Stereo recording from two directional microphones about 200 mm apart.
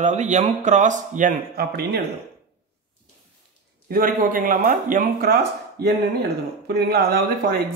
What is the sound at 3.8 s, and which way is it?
Speech, 45° right (ahead or behind).